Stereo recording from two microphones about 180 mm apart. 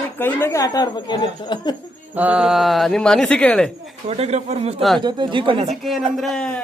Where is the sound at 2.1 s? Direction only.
5° right (ahead or behind).